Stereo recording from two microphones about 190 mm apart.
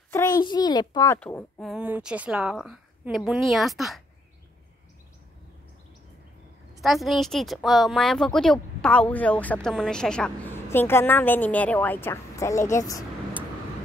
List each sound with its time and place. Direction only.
0.1 s a sound: 15° left (ahead or behind)
0.4 s a child's voice: 20° left (ahead or behind)
1.6 s a woman's voice: 5° right (ahead or behind)
6.8 s a woman's voice: centre (ahead or behind); by 13.0 s 15° left (ahead or behind)